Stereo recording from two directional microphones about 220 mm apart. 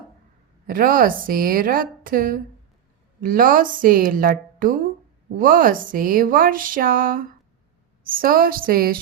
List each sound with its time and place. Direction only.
0.7 s speech: 40° right (ahead or behind)